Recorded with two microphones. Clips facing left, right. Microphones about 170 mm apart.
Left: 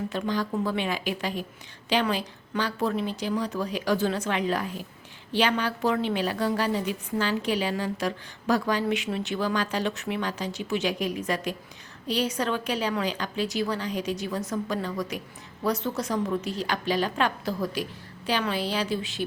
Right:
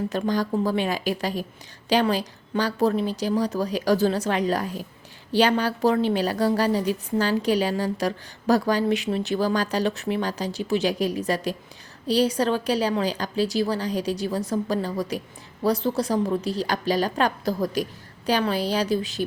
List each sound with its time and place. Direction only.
0.1 s a woman's voice: 45° right (ahead or behind)